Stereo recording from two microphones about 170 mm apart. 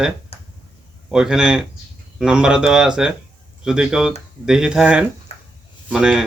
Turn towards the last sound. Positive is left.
turn(degrees=-5)  # may be behind; listen again after turning